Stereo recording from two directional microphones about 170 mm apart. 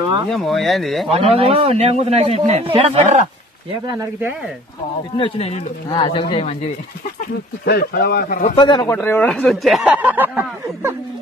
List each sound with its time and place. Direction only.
0.3 s speech: centre (ahead or behind)
1.1 s a man's voice: 35° right (ahead or behind)
5.1 s speech: 35° left (ahead or behind)
7.6 s speech: 70° left (ahead or behind)
8.5 s speech: 30° left (ahead or behind)
8.9 s speech: 10° left (ahead or behind); by 11.0 s 10° right (ahead or behind)